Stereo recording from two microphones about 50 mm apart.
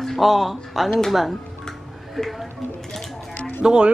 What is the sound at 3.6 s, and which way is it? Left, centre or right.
Speech, centre.